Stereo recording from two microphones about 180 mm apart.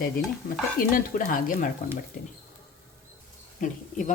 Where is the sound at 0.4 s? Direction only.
45° left (ahead or behind).